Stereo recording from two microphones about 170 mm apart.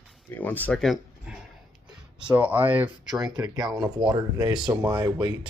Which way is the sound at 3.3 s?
25° right (ahead or behind).